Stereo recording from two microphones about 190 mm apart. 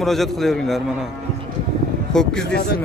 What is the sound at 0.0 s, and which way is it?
Speech, centre (ahead or behind).